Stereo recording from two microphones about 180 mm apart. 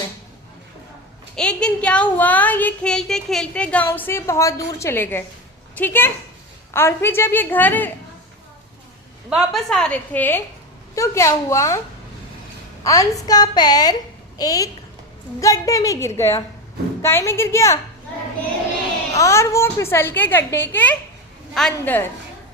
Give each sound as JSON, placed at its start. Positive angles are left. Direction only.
{"t": 1.4, "sound": "speech", "side_deg": 5}
{"t": 9.3, "sound": "a woman's voice", "side_deg": 0}
{"t": 12.8, "sound": "a woman's voice", "side_deg": 20}
{"t": 19.1, "sound": "speech", "side_deg": 15}